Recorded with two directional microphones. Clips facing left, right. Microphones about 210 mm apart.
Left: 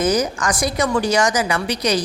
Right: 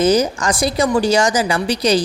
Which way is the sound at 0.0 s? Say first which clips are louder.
Right 4 dB; 30° right (ahead or behind).